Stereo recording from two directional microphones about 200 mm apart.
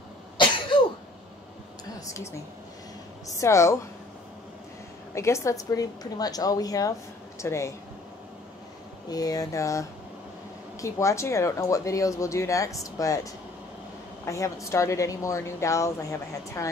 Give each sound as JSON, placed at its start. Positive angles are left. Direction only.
{"t": 0.7, "sound": "cough", "side_deg": 25}
{"t": 3.3, "sound": "speech", "side_deg": 15}
{"t": 5.1, "sound": "speech", "side_deg": 15}
{"t": 9.1, "sound": "speech", "side_deg": 20}